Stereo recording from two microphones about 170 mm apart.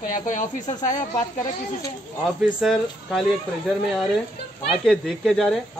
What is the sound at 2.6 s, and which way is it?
Speech, centre (ahead or behind).